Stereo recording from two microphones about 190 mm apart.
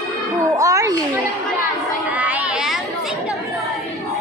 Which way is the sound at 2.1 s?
10° right (ahead or behind).